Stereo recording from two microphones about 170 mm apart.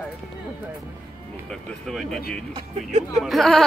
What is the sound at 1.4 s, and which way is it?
Speech, centre (ahead or behind).